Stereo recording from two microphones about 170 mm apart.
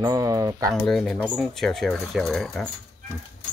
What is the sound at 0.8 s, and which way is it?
Speech, 5° left (ahead or behind).